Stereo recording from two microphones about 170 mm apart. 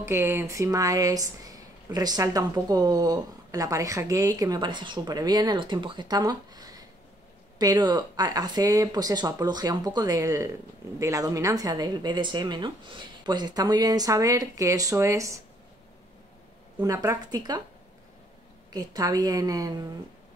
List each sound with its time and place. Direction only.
0.0 s speech: 15° right (ahead or behind)
16.7 s speech: 20° right (ahead or behind)
18.7 s speech: 20° right (ahead or behind)